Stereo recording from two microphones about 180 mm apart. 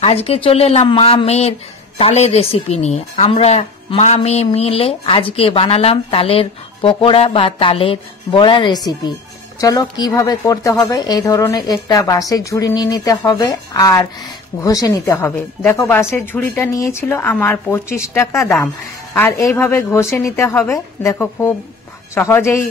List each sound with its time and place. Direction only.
0.0 s a woman's voice: 35° left (ahead or behind); by 22.7 s 15° left (ahead or behind)